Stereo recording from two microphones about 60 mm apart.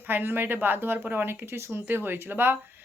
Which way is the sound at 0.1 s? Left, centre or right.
Right.